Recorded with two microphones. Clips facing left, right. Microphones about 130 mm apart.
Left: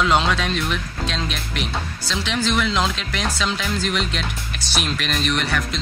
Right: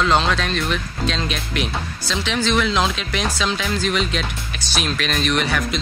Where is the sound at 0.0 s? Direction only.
5° left (ahead or behind).